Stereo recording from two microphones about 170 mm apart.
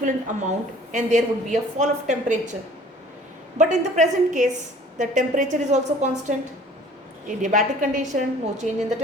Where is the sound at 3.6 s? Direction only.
45° right (ahead or behind).